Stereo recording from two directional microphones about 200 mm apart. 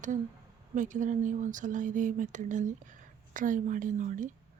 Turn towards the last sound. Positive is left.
turn(degrees=-40)  # may be behind; listen again after turning